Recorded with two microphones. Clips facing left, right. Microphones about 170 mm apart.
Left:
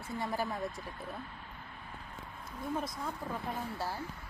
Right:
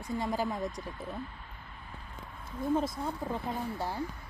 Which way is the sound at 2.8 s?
25° right (ahead or behind).